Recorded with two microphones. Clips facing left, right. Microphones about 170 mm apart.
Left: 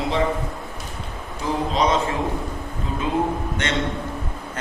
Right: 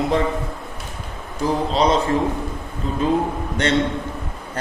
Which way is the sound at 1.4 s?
35° right (ahead or behind).